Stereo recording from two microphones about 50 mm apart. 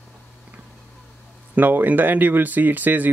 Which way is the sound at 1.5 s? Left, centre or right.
Right.